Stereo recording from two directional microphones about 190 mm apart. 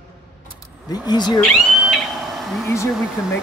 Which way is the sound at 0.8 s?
20° left (ahead or behind).